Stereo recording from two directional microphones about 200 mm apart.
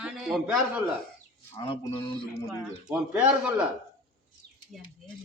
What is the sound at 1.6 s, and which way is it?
Speech, 25° left (ahead or behind).